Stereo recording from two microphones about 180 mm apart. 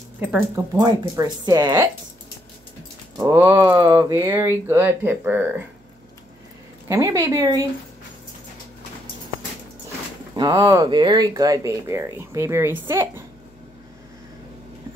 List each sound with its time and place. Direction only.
0.7 s speech: 20° right (ahead or behind)
3.2 s speech: 20° right (ahead or behind)
6.9 s speech: 15° right (ahead or behind)
10.3 s speech: 20° right (ahead or behind)